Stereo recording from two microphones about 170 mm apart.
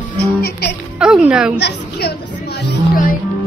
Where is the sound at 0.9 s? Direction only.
5° right (ahead or behind).